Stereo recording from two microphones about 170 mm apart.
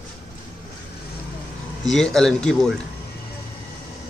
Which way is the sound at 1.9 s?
5° left (ahead or behind).